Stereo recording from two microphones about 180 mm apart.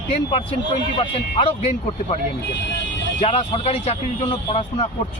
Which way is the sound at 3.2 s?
35° left (ahead or behind).